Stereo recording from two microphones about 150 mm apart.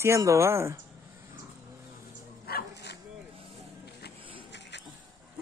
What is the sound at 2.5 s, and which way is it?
Dog, 90° left.